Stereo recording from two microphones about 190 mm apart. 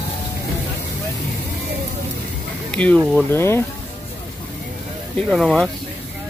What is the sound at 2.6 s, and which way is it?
Speech, 5° left (ahead or behind).